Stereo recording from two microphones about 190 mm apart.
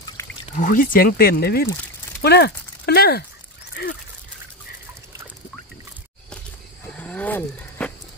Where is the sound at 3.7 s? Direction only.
55° left (ahead or behind).